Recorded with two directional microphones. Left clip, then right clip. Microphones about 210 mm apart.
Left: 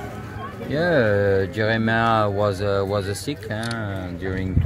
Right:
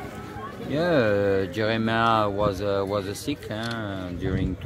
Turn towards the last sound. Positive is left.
turn(degrees=0)  # may be behind; listen again after turning